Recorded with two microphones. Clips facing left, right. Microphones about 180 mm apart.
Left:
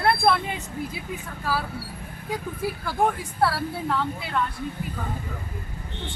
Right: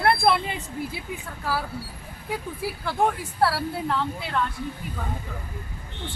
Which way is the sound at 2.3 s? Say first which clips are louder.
Left 1 dB; centre (ahead or behind).